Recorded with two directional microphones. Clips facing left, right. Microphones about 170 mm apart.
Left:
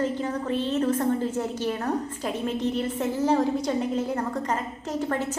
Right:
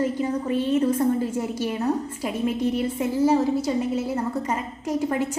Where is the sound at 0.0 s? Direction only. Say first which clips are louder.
Right 3 dB; 10° right (ahead or behind).